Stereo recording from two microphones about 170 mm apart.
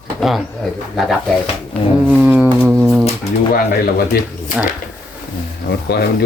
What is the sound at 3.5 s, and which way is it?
Speech, 60° left (ahead or behind).